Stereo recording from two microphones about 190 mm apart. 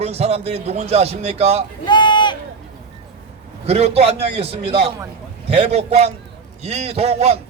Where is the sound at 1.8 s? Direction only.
25° left (ahead or behind).